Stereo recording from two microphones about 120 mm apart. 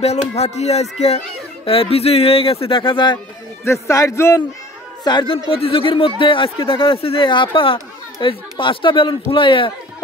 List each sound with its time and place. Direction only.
0.0 s speech: 60° left (ahead or behind); by 3.2 s 45° left (ahead or behind)
3.6 s speech: 25° left (ahead or behind)
5.0 s speech: 40° left (ahead or behind)